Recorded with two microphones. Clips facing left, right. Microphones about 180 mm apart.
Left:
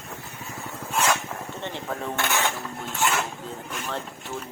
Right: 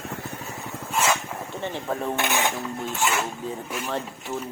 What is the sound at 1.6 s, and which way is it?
Speech, 10° right (ahead or behind).